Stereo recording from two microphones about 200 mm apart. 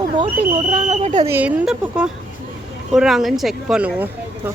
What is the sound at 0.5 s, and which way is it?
Speech, 35° right (ahead or behind).